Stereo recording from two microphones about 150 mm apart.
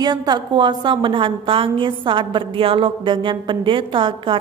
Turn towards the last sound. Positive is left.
turn(degrees=-35)  # may be behind; listen again after turning